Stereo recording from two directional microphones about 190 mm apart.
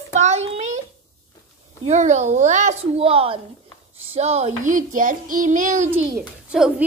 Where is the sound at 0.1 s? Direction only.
35° right (ahead or behind).